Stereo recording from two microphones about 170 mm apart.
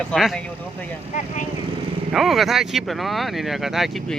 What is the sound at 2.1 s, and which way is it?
Speech, centre (ahead or behind).